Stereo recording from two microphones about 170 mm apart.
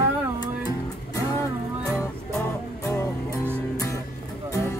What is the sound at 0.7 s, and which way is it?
Music, 20° left (ahead or behind).